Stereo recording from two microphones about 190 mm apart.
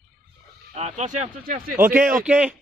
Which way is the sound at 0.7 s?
35° right (ahead or behind).